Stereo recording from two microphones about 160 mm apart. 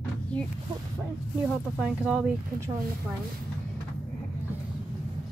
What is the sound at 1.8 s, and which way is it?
Speech, 5° right (ahead or behind).